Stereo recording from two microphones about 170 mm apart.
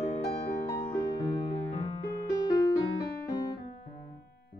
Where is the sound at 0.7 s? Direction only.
25° left (ahead or behind).